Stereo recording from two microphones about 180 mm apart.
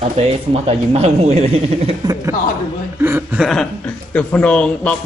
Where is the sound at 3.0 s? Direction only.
10° right (ahead or behind).